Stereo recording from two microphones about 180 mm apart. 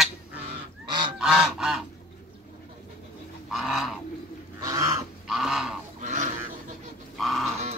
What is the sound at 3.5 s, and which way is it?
Goose, centre (ahead or behind).